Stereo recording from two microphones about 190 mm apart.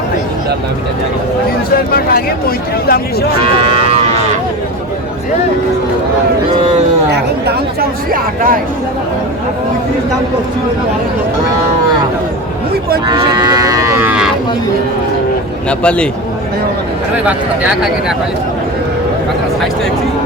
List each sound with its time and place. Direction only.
1.7 s speech: 50° left (ahead or behind)
3.5 s cattle: 30° right (ahead or behind)
7.1 s speech: 55° right (ahead or behind)
13.1 s moo: 20° right (ahead or behind)
15.8 s a man's voice: 5° left (ahead or behind)